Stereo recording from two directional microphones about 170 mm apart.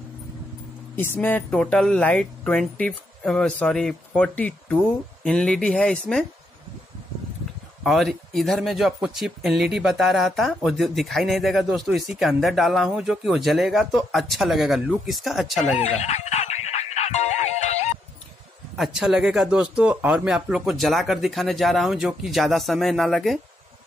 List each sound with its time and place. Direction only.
0.9 s speech: 10° left (ahead or behind)
7.8 s speech: centre (ahead or behind)
15.8 s music: 40° left (ahead or behind)
18.8 s speech: 5° right (ahead or behind)